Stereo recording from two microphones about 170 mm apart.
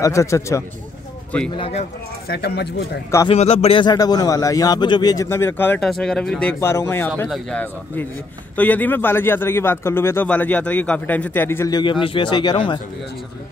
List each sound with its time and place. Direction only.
0.0 s a man's voice: 20° left (ahead or behind)
1.5 s speech: 35° left (ahead or behind)
2.2 s speech: 75° left (ahead or behind)
3.3 s a man's voice: 35° left (ahead or behind)